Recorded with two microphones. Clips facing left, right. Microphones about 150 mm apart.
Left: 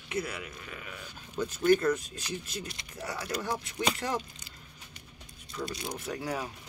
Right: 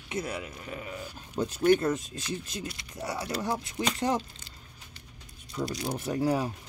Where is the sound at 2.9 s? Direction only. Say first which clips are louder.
Right 2 dB; 20° right (ahead or behind).